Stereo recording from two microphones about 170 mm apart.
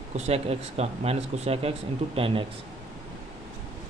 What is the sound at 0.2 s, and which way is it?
Speech, 40° right (ahead or behind).